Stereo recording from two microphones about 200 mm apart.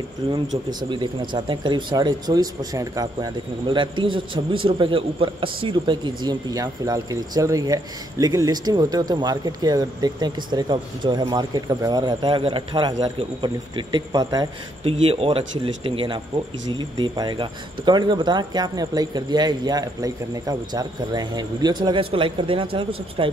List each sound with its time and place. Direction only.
0.7 s speech: 25° right (ahead or behind)